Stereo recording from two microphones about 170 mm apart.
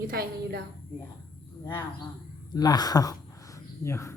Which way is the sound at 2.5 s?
25° left (ahead or behind).